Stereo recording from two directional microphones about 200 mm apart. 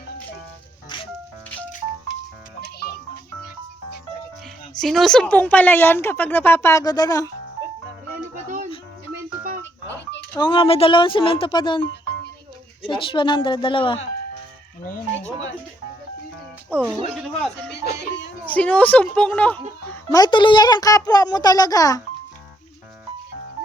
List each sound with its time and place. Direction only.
2.6 s music: 55° left (ahead or behind)
4.8 s a woman's voice: centre (ahead or behind); by 7.3 s 20° left (ahead or behind)
10.3 s a woman's voice: 25° left (ahead or behind)
14.8 s speech: 45° left (ahead or behind)
16.7 s a woman's voice: 10° left (ahead or behind)
20.1 s a woman's voice: 20° left (ahead or behind)